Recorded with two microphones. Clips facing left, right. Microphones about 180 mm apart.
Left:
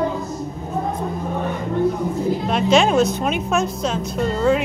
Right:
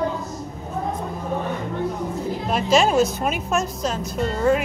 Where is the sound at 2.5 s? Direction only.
5° right (ahead or behind).